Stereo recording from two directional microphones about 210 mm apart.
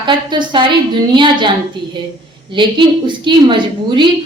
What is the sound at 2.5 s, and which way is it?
A woman's voice, 20° right (ahead or behind).